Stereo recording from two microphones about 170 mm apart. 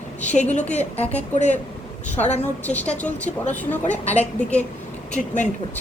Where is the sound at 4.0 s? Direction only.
40° left (ahead or behind).